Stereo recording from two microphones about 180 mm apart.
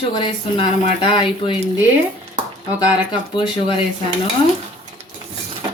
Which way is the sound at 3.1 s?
25° left (ahead or behind).